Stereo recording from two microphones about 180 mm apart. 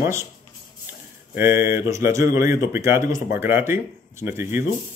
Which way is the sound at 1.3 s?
15° right (ahead or behind).